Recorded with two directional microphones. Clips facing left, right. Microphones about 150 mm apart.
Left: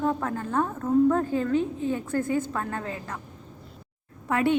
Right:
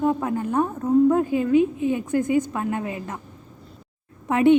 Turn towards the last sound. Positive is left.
turn(degrees=-20)  # may be behind; listen again after turning